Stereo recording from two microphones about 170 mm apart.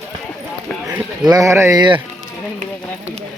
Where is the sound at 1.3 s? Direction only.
20° right (ahead or behind).